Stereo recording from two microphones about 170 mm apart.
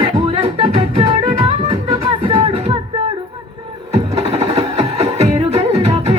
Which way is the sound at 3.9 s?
35° right (ahead or behind).